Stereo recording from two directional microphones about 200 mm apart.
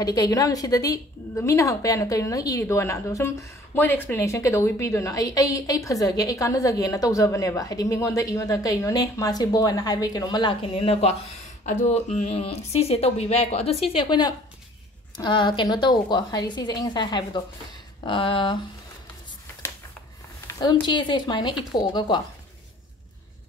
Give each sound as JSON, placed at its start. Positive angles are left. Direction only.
{"t": 0.0, "sound": "a woman's voice", "side_deg": 20}
{"t": 20.4, "sound": "a woman's voice", "side_deg": 20}